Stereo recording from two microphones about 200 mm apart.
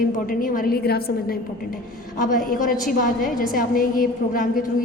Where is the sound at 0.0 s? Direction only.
45° left (ahead or behind).